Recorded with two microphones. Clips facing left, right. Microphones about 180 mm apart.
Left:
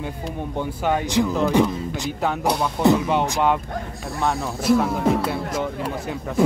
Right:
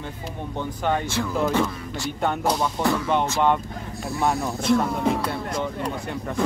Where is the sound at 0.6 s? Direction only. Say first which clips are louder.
Left 2 dB; 15° left (ahead or behind).